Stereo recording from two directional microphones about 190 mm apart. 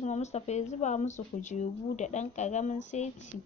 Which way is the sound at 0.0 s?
35° left (ahead or behind).